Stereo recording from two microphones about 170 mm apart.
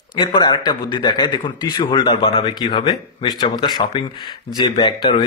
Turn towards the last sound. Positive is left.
turn(degrees=25)  # may be behind; listen again after turning